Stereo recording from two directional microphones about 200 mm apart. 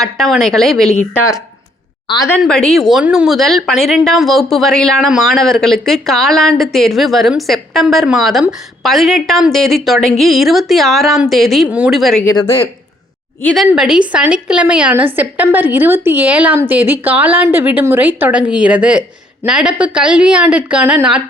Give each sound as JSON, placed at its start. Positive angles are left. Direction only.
{"t": 0.0, "sound": "speech", "side_deg": 0}
{"t": 2.0, "sound": "a woman's voice", "side_deg": 20}
{"t": 2.4, "sound": "speech", "side_deg": 5}
{"t": 12.2, "sound": "speech", "side_deg": 15}
{"t": 13.7, "sound": "a woman's voice", "side_deg": -5}